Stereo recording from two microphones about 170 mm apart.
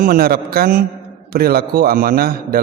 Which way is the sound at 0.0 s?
60° right (ahead or behind).